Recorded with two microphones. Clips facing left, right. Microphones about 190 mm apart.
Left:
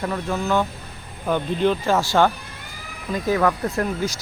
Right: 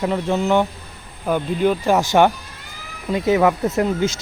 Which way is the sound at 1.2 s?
10° right (ahead or behind).